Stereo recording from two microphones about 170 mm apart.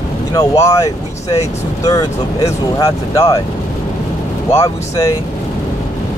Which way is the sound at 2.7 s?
20° left (ahead or behind).